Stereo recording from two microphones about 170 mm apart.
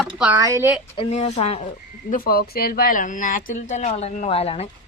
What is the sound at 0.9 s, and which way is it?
Speech, 40° left (ahead or behind).